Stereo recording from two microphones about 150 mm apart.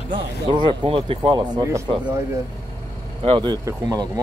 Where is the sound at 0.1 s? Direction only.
30° right (ahead or behind).